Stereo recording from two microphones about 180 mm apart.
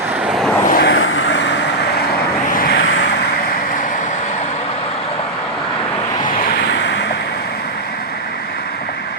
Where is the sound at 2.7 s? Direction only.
90° left; by 4.4 s 40° left (ahead or behind).